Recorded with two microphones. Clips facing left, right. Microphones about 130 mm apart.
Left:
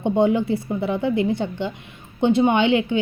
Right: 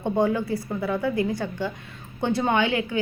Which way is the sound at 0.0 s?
20° left (ahead or behind).